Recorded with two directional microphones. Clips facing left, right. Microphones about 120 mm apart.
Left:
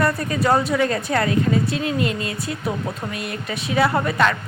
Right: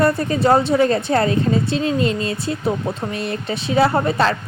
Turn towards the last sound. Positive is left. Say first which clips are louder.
# right 2 dB
turn(degrees=-30)  # may be behind; listen again after turning